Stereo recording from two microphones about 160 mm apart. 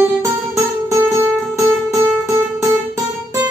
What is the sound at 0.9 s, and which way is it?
Music, 20° right (ahead or behind).